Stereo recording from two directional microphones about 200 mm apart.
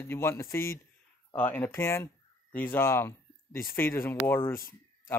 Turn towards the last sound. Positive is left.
turn(degrees=10)  # may be behind; listen again after turning